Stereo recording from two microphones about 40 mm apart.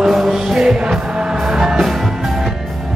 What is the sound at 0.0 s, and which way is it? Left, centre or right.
Music, centre.